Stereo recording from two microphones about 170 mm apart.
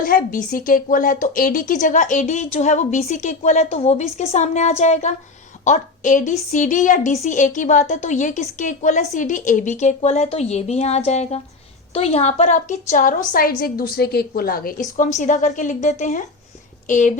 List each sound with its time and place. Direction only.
0.0 s a woman's voice: 55° left (ahead or behind)